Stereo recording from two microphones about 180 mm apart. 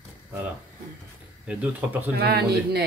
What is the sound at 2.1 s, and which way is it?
Speech, 65° right (ahead or behind).